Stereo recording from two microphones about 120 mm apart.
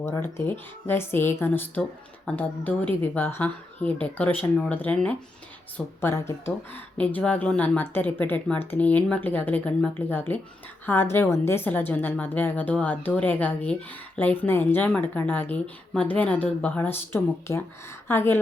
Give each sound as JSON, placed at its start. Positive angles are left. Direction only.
{"t": 0.0, "sound": "speech", "side_deg": 25}
{"t": 6.9, "sound": "speech", "side_deg": 10}